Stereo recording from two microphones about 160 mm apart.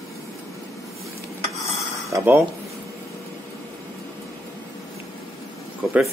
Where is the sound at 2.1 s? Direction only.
10° right (ahead or behind).